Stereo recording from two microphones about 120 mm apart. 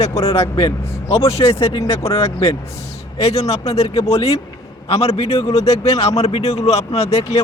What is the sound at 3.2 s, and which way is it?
Speech, 60° left (ahead or behind).